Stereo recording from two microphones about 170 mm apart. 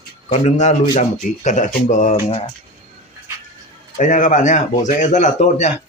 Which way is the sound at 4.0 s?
45° left (ahead or behind).